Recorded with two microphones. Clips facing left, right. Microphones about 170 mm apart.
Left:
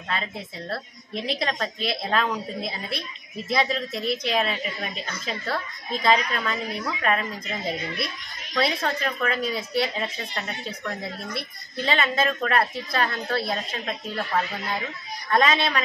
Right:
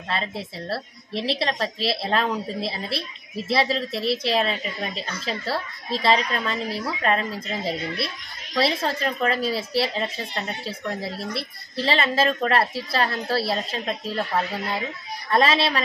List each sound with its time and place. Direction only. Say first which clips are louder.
0.7 s a woman's voice: right 3 dB; 30° right (ahead or behind)
15.3 s a woman's voice: right 1 dB; 30° right (ahead or behind)